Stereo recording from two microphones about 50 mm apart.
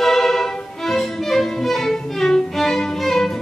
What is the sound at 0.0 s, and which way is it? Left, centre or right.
Music, centre.